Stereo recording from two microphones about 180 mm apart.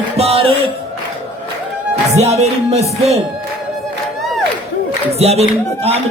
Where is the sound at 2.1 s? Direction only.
35° right (ahead or behind).